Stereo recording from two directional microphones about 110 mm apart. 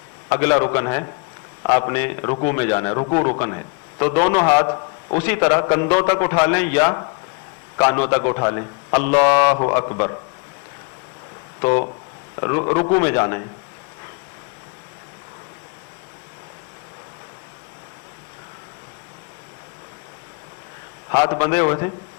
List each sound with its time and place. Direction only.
0.3 s a man's voice: 25° left (ahead or behind)
12.4 s a man's voice: 30° left (ahead or behind)
21.1 s a man's voice: 30° left (ahead or behind)